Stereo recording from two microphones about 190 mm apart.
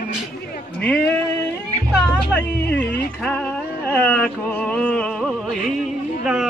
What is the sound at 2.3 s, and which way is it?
Speech, 10° left (ahead or behind).